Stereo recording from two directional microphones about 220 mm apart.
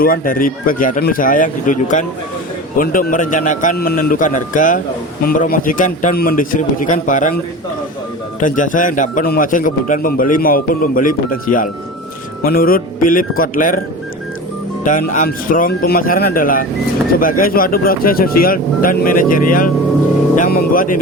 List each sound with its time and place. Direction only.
0.0 s speech: 40° left (ahead or behind)
8.4 s speech: 35° left (ahead or behind)
14.8 s speech: 35° left (ahead or behind)